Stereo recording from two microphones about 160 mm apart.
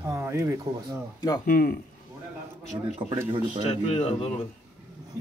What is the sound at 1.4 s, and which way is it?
Speech, 65° left (ahead or behind).